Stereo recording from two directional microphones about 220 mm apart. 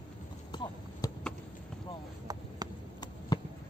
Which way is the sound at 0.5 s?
20° left (ahead or behind).